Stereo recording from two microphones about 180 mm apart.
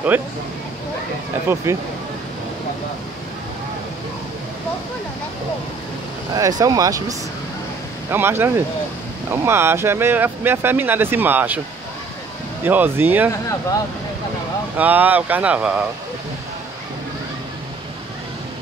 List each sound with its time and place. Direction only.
0.1 s speech: 10° right (ahead or behind)
1.6 s speech: 15° right (ahead or behind)
6.3 s speech: 20° right (ahead or behind)
12.6 s speech: 10° right (ahead or behind)
14.8 s speech: 10° right (ahead or behind)